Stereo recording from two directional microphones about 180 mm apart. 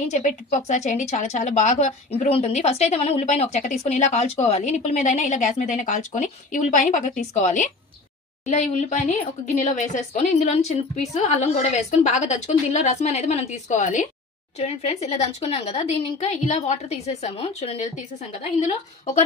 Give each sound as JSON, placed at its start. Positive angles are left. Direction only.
{"t": 0.1, "sound": "a woman's voice", "side_deg": 40}